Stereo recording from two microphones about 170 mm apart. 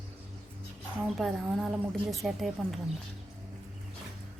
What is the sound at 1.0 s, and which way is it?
A woman's voice, centre (ahead or behind).